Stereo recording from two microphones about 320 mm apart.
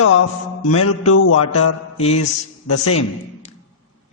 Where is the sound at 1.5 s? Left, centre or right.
Left.